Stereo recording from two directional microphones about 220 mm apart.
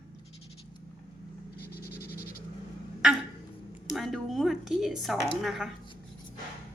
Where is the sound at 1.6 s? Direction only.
45° left (ahead or behind).